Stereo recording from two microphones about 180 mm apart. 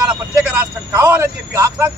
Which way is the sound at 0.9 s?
15° right (ahead or behind).